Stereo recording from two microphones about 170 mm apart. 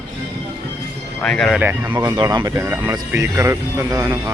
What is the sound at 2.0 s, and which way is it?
Speech, 25° right (ahead or behind).